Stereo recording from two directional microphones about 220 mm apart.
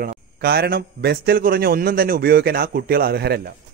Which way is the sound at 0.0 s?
45° right (ahead or behind).